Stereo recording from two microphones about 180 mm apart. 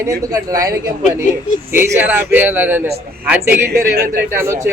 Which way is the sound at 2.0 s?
10° right (ahead or behind).